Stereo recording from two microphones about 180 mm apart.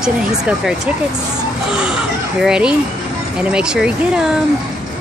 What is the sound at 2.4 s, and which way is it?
Speech, 5° right (ahead or behind).